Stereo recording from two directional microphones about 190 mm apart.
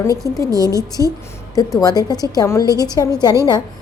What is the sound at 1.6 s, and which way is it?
A woman's voice, 20° left (ahead or behind).